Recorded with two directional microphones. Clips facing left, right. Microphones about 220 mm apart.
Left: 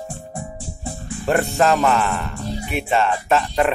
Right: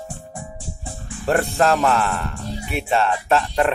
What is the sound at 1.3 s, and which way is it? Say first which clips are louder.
Speech: left 1 dB; centre (ahead or behind).